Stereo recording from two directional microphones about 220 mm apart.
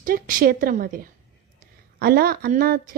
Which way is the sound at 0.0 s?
40° right (ahead or behind).